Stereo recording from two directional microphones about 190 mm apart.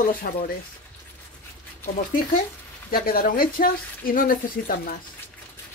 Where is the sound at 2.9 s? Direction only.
50° left (ahead or behind).